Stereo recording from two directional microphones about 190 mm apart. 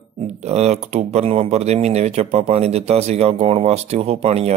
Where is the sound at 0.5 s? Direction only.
35° right (ahead or behind).